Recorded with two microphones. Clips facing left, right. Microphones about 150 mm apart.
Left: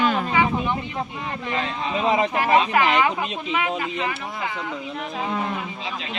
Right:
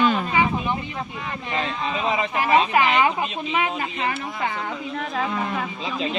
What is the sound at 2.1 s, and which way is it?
Speech, 40° left (ahead or behind).